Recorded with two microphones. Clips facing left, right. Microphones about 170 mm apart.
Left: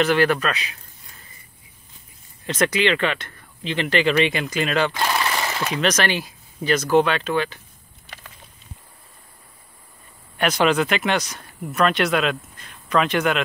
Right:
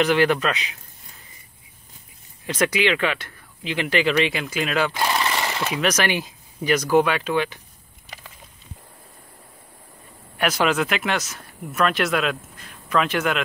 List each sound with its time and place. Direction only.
0.0 s a man's voice: 15° right (ahead or behind)
2.4 s speech: 10° right (ahead or behind)
10.3 s speech: 5° right (ahead or behind)